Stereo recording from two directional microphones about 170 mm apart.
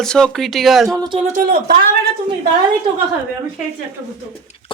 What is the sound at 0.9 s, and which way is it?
Speech, 25° right (ahead or behind).